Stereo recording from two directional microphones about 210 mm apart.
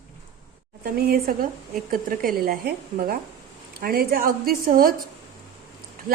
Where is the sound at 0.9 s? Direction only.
45° right (ahead or behind).